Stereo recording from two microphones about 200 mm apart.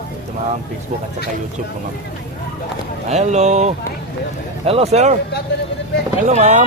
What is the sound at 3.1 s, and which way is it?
Speech, 35° right (ahead or behind).